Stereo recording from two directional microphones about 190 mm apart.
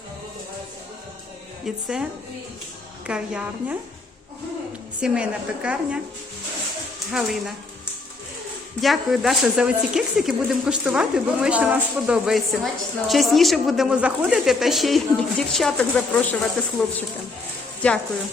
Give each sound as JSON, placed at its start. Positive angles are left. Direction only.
{"t": 1.6, "sound": "a woman's voice", "side_deg": -5}
{"t": 3.1, "sound": "a woman's voice", "side_deg": -5}
{"t": 4.9, "sound": "a woman's voice", "side_deg": -5}
{"t": 7.1, "sound": "a woman's voice", "side_deg": 0}
{"t": 8.8, "sound": "a woman's voice", "side_deg": 0}
{"t": 17.8, "sound": "speech", "side_deg": 5}